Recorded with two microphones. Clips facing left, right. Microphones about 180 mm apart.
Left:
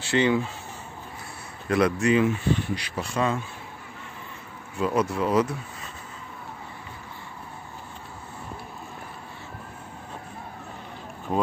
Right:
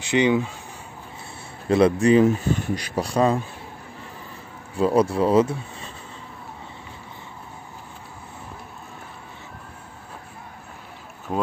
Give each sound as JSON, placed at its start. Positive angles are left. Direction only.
{"t": 0.0, "sound": "speech", "side_deg": -15}
{"t": 1.7, "sound": "speech", "side_deg": -30}
{"t": 4.7, "sound": "speech", "side_deg": -30}